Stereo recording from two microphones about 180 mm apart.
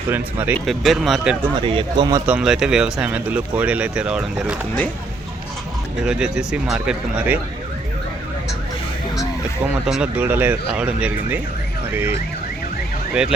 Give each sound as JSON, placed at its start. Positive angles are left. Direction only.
{"t": 0.1, "sound": "speech", "side_deg": -10}
{"t": 0.6, "sound": "speech", "side_deg": 0}
{"t": 1.5, "sound": "speech", "side_deg": -25}
{"t": 2.2, "sound": "speech", "side_deg": -5}
{"t": 6.1, "sound": "speech", "side_deg": -5}
{"t": 9.6, "sound": "speech", "side_deg": -5}